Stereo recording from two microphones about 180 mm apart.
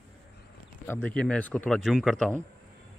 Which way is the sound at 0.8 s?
10° left (ahead or behind).